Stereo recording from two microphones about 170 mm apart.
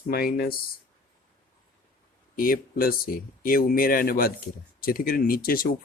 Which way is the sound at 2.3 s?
60° left (ahead or behind).